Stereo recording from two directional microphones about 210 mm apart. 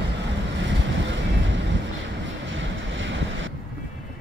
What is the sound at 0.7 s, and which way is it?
Vehicle, 60° right (ahead or behind).